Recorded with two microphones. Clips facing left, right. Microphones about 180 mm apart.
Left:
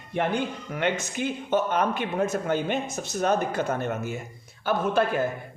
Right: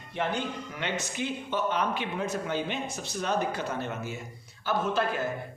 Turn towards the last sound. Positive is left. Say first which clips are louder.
# left 4 dB
turn(degrees=55)  # may be behind; listen again after turning